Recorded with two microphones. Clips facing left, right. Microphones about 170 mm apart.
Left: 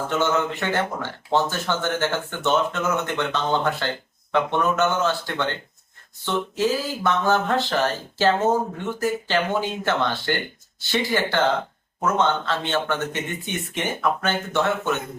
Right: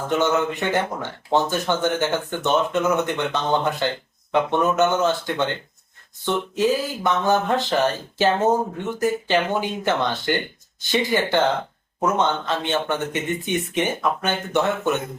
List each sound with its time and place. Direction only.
0.1 s speech: 20° right (ahead or behind)